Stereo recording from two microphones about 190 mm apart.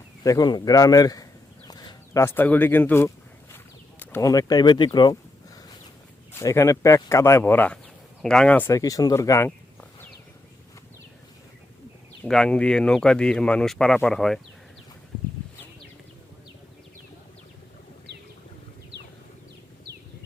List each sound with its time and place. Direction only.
0.2 s speech: 20° left (ahead or behind)
6.4 s speech: 15° left (ahead or behind)
12.2 s speech: 5° left (ahead or behind)